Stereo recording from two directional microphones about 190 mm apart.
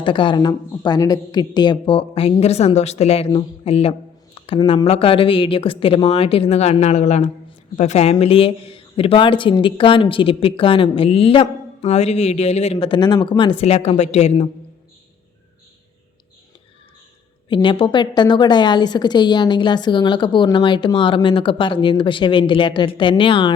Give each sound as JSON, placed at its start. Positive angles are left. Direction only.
{"t": 0.0, "sound": "a woman's voice", "side_deg": 25}
{"t": 17.5, "sound": "a woman's voice", "side_deg": 25}